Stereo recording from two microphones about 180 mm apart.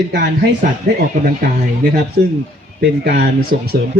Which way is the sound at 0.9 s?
65° right (ahead or behind).